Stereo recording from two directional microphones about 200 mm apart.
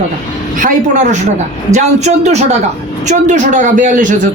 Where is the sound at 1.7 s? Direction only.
35° right (ahead or behind).